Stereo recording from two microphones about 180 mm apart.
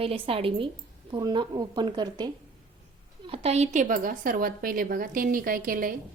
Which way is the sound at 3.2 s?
35° right (ahead or behind).